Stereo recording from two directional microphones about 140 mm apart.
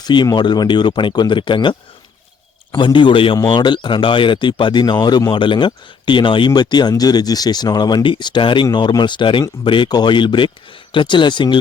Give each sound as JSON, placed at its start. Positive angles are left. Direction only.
{"t": 0.0, "sound": "speech", "side_deg": 30}
{"t": 2.7, "sound": "speech", "side_deg": 35}